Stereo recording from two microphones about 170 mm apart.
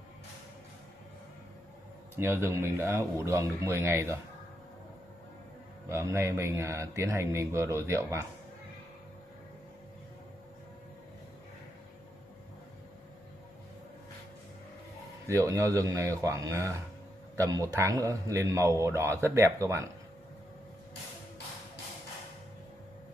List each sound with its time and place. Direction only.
2.1 s a man's voice: 15° right (ahead or behind)
5.9 s a man's voice: 15° right (ahead or behind)
15.2 s a man's voice: 20° right (ahead or behind)